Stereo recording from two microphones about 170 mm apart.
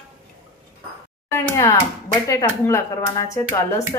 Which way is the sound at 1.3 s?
15° left (ahead or behind).